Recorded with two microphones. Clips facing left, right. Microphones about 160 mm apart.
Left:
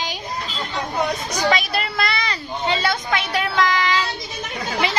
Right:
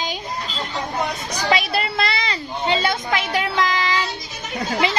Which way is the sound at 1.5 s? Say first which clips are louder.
Right 1 dB; 30° right (ahead or behind).